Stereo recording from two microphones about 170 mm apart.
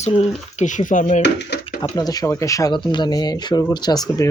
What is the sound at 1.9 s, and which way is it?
Speech, 20° left (ahead or behind).